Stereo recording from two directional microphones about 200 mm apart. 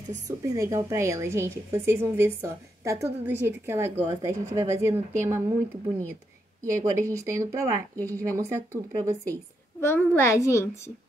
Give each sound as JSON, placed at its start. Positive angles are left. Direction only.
{"t": 0.5, "sound": "a woman's voice", "side_deg": -15}
{"t": 9.8, "sound": "a child's voice", "side_deg": 10}